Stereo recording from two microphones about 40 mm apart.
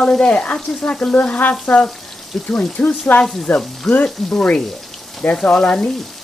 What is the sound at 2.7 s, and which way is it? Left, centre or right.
Frying, left.